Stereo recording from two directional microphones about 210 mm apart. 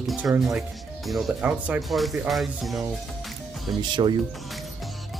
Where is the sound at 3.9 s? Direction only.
20° right (ahead or behind).